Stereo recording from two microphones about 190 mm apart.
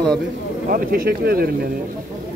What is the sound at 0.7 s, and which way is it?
Speech, 50° right (ahead or behind).